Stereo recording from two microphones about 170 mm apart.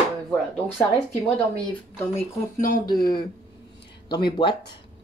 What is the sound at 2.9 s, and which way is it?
Speech, 25° left (ahead or behind).